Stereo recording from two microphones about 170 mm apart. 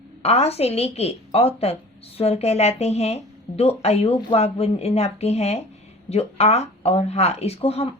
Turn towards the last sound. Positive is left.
turn(degrees=35)  # may be behind; listen again after turning